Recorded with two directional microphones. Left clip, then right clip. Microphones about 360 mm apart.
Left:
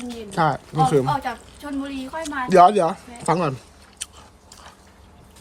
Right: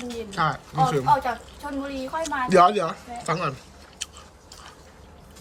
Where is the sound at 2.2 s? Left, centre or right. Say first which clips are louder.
Left 3 dB; centre.